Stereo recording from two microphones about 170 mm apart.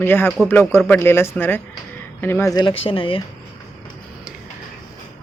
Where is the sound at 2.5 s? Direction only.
25° left (ahead or behind).